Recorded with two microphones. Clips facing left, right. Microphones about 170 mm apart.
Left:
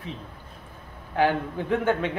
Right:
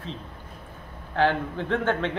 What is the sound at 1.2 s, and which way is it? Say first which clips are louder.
Speech: even; 10° left (ahead or behind).